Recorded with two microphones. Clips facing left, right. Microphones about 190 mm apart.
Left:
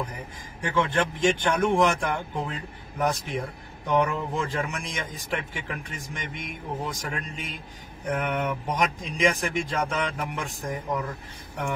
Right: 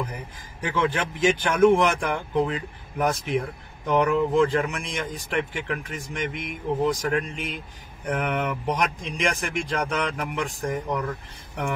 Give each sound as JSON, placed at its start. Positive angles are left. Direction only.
{"t": 0.7, "sound": "speech", "side_deg": 0}